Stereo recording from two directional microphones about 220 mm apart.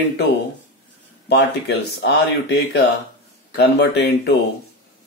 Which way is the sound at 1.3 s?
50° left (ahead or behind).